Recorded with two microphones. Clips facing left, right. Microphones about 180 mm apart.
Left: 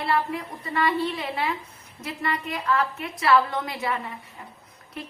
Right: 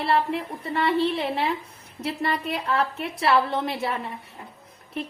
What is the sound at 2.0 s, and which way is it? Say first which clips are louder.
A woman's voice: right 3 dB; 35° right (ahead or behind).